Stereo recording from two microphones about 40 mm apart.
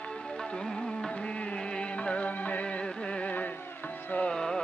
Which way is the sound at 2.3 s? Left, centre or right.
Left.